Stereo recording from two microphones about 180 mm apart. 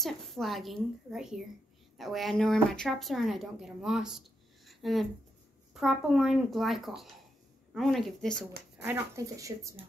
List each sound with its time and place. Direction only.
0.0 s speech: centre (ahead or behind)
4.6 s a sound: centre (ahead or behind)
5.7 s speech: centre (ahead or behind)
8.8 s speech: 15° right (ahead or behind)